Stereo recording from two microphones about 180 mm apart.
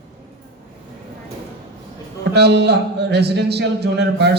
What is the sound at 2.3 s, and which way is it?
Mantra, 70° right (ahead or behind).